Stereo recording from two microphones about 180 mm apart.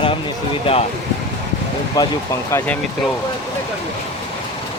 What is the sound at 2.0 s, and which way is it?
Speech, 20° left (ahead or behind).